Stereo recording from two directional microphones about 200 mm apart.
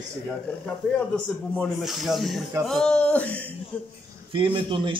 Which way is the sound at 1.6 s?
Centre (ahead or behind).